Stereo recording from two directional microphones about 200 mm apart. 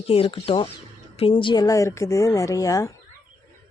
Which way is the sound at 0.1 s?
30° left (ahead or behind).